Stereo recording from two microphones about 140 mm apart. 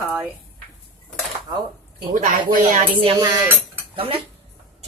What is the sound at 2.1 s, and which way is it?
Speech, 75° right (ahead or behind).